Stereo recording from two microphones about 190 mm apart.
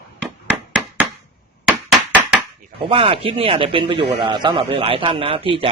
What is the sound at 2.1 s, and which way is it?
Chop, 10° right (ahead or behind).